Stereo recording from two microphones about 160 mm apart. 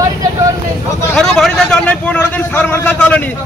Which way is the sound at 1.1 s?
5° left (ahead or behind).